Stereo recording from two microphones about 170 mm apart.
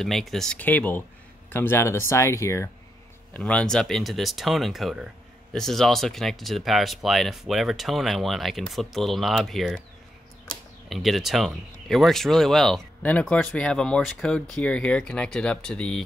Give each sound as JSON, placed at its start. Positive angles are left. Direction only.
{"t": 0.0, "sound": "speech", "side_deg": 0}